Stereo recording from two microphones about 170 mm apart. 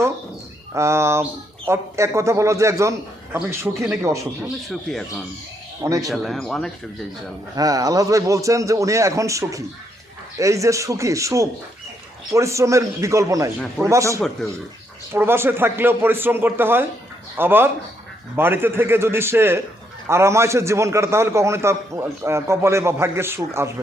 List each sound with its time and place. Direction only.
0.7 s a man's voice: 15° right (ahead or behind)
4.7 s speech: centre (ahead or behind)
5.8 s a man's voice: 20° right (ahead or behind)
6.1 s speech: centre (ahead or behind)
7.5 s a man's voice: 20° right (ahead or behind)